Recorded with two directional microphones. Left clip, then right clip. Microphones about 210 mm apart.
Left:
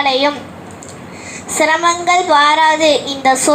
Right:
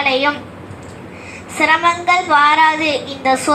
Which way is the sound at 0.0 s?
30° left (ahead or behind).